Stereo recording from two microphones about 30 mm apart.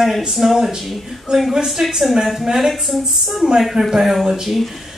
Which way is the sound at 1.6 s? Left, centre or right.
Centre.